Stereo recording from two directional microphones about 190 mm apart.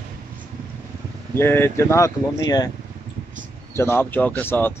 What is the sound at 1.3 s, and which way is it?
Speech, 10° left (ahead or behind).